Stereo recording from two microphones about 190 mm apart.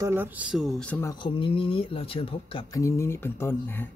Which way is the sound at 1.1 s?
25° left (ahead or behind).